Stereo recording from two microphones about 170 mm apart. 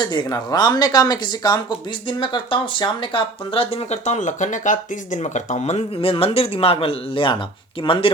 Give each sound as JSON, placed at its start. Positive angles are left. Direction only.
{"t": 0.0, "sound": "speech", "side_deg": 25}